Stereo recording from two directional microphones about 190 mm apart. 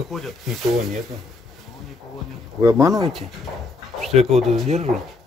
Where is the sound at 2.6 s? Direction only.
15° right (ahead or behind).